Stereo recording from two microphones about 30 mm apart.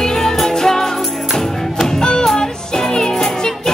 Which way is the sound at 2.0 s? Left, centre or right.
Left.